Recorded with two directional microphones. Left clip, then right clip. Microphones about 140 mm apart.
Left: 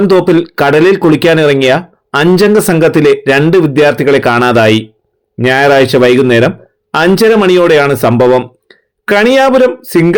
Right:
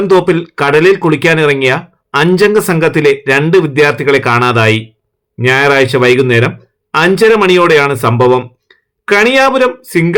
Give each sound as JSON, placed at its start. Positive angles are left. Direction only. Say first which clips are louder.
{"t": 0.1, "sound": "speech", "louder": "left 1 dB", "side_deg": 25}